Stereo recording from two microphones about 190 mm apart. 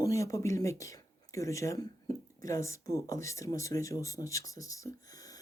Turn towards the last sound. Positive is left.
turn(degrees=20)  # may be behind; listen again after turning